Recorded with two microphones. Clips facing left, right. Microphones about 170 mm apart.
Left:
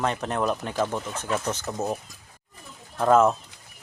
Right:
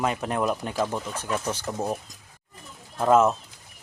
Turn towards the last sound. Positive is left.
turn(degrees=-5)  # may be behind; listen again after turning